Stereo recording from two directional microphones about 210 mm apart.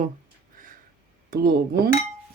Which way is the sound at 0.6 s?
40° right (ahead or behind).